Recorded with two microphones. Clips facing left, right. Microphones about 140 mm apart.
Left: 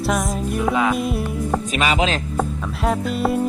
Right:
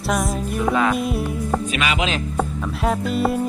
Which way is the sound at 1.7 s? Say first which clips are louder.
Left 3 dB; 35° left (ahead or behind).